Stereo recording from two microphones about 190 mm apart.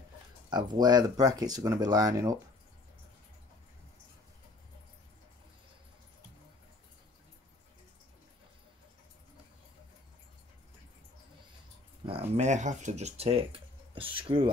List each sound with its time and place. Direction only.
0.5 s speech: 20° right (ahead or behind)
12.4 s speech: 40° right (ahead or behind)